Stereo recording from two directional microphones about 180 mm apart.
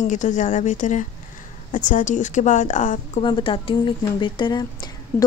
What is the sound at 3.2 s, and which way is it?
A woman's voice, 25° left (ahead or behind).